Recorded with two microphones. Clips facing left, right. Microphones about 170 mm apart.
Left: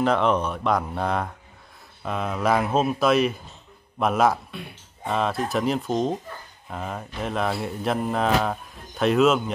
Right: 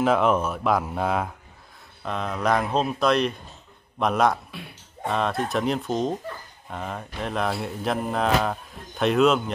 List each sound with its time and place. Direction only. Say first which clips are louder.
0.0 s mantra: right 1 dB; 5° right (ahead or behind)